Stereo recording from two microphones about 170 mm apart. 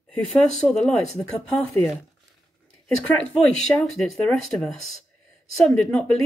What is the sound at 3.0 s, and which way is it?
Speech, 5° left (ahead or behind).